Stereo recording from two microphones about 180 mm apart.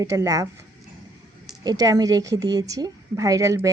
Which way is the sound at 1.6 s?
20° right (ahead or behind).